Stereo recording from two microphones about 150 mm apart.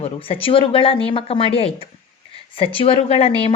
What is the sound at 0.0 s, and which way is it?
A woman's voice, 40° left (ahead or behind).